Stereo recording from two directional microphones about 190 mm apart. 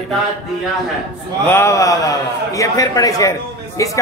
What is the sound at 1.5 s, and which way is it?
Speech, 15° left (ahead or behind).